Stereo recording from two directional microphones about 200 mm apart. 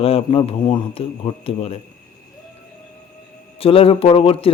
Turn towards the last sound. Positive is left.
turn(degrees=30)  # may be behind; listen again after turning